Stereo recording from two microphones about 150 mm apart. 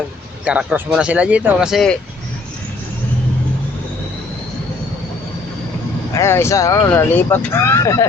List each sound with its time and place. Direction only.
0.4 s speech: 10° right (ahead or behind)
6.1 s speech: 15° left (ahead or behind)